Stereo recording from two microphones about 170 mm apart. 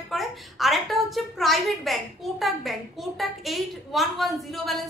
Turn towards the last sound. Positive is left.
turn(degrees=0)  # may be behind; listen again after turning